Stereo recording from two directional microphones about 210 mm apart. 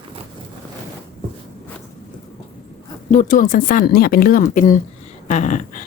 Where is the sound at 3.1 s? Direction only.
40° left (ahead or behind).